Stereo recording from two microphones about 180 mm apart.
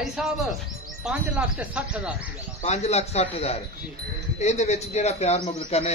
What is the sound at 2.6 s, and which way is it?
A man's voice, 35° left (ahead or behind).